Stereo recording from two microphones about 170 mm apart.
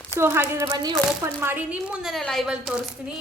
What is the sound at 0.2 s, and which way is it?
Speech, 15° right (ahead or behind).